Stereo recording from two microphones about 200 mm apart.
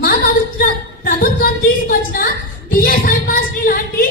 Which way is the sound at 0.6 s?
45° left (ahead or behind).